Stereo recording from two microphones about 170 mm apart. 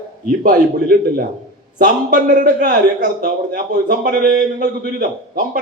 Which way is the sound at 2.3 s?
50° right (ahead or behind).